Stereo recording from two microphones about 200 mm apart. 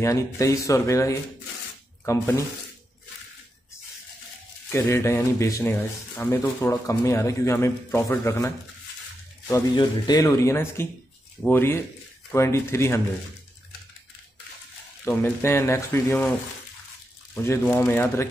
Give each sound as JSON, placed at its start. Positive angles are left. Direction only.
{"t": 0.0, "sound": "speech", "side_deg": 15}
{"t": 4.6, "sound": "speech", "side_deg": 10}
{"t": 15.0, "sound": "speech", "side_deg": 10}
{"t": 17.3, "sound": "a sound", "side_deg": 15}
{"t": 17.6, "sound": "speech", "side_deg": 10}